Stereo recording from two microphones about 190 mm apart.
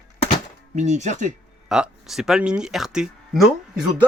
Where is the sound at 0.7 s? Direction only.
40° right (ahead or behind).